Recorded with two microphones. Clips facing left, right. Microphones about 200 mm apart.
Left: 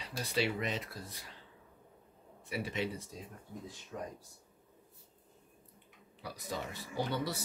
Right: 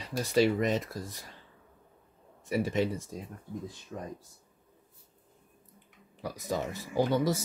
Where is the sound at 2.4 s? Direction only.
45° right (ahead or behind).